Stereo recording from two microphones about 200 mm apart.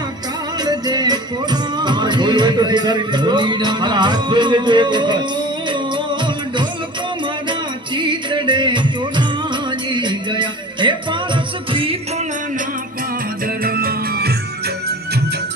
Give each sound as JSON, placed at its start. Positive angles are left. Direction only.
{"t": 0.6, "sound": "music", "side_deg": -20}
{"t": 7.9, "sound": "music", "side_deg": -25}
{"t": 13.6, "sound": "music", "side_deg": -50}